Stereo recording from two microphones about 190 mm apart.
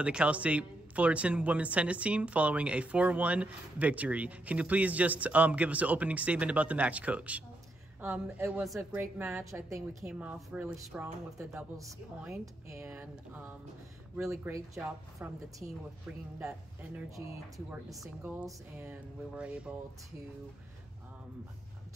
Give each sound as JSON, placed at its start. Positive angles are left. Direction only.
{"t": 0.0, "sound": "speech", "side_deg": -5}
{"t": 9.9, "sound": "speech", "side_deg": -5}
{"t": 12.8, "sound": "speech", "side_deg": -5}
{"t": 18.4, "sound": "speech", "side_deg": -10}